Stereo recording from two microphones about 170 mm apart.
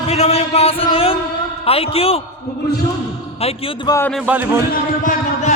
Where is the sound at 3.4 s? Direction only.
35° left (ahead or behind).